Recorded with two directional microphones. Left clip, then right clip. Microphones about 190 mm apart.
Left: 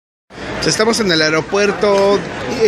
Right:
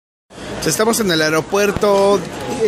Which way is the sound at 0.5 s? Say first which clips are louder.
Left 2 dB; 10° right (ahead or behind).